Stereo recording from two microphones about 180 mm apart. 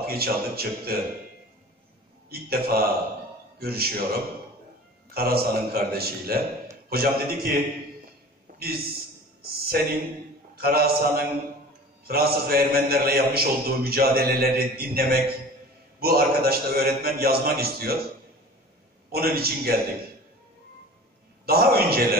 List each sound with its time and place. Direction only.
0.0 s a man's voice: 60° right (ahead or behind)
2.2 s a man's voice: 55° right (ahead or behind)
8.5 s a man's voice: 60° right (ahead or behind)
19.1 s a man's voice: 60° right (ahead or behind)
21.5 s a man's voice: 60° right (ahead or behind)